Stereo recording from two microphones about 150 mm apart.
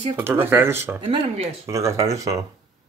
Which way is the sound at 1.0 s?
40° right (ahead or behind).